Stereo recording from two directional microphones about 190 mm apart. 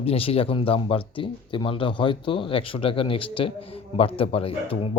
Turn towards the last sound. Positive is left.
turn(degrees=30)  # may be behind; listen again after turning